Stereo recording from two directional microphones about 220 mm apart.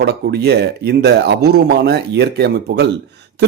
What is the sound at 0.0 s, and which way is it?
Speech, 50° right (ahead or behind).